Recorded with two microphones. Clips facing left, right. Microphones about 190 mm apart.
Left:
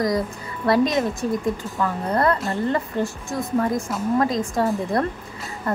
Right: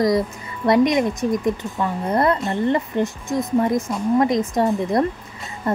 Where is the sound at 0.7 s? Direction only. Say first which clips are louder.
Right 3 dB; 20° right (ahead or behind).